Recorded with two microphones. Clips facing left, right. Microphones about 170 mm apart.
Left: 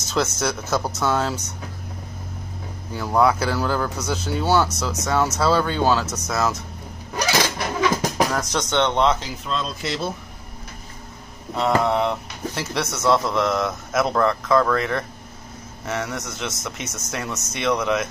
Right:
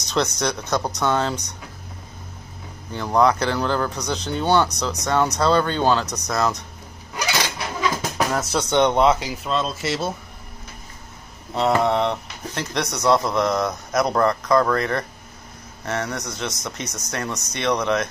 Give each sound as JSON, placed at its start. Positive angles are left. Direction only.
{"t": 0.0, "sound": "speech", "side_deg": 5}
{"t": 2.9, "sound": "speech", "side_deg": 5}
{"t": 7.2, "sound": "a sound", "side_deg": 40}
{"t": 8.3, "sound": "speech", "side_deg": -5}
{"t": 11.5, "sound": "speech", "side_deg": 0}